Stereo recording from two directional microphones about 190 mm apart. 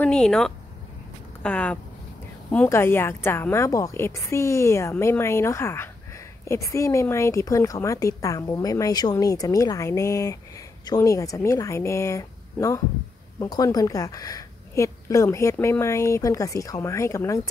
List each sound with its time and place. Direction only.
0.0 s a woman's voice: 5° left (ahead or behind)